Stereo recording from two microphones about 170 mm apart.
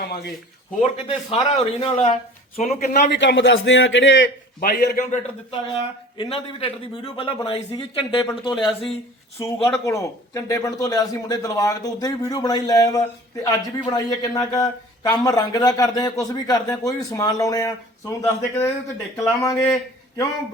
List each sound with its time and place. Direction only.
0.8 s speech: 35° left (ahead or behind)
2.6 s a man's voice: 50° left (ahead or behind); by 4.9 s 75° left (ahead or behind)
6.1 s speech: 35° left (ahead or behind)
9.4 s speech: 15° left (ahead or behind)